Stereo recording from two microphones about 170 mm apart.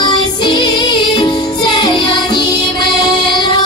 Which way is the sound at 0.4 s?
25° left (ahead or behind).